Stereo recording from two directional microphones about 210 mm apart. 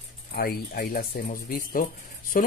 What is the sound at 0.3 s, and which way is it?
Speech, 45° left (ahead or behind).